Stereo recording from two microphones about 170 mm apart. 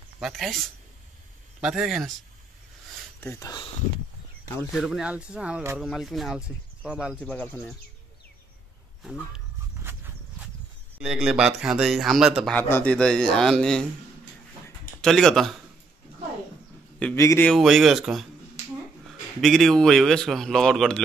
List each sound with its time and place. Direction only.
0.2 s a man's voice: centre (ahead or behind)
3.2 s speech: 15° left (ahead or behind)
4.7 s a man's voice: centre (ahead or behind)
7.2 s speech: 10° left (ahead or behind)
9.8 s walk: 15° right (ahead or behind)
11.0 s a man's voice: 5° right (ahead or behind)
12.5 s a man's voice: 10° left (ahead or behind)
15.0 s a man's voice: 5° left (ahead or behind)
17.0 s speech: 15° left (ahead or behind)
17.5 s a man's voice: centre (ahead or behind)
19.4 s a man's voice: centre (ahead or behind)